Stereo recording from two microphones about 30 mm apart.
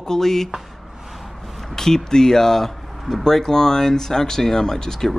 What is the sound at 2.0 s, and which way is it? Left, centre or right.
Speech, centre.